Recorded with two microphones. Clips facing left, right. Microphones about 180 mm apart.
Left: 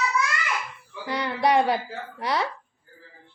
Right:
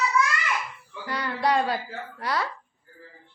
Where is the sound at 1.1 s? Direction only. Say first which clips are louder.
Left 3 dB; 20° left (ahead or behind).